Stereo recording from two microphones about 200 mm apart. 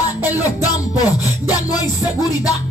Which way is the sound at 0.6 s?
20° left (ahead or behind).